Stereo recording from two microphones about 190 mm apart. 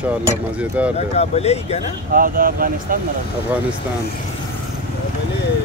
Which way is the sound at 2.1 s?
50° right (ahead or behind).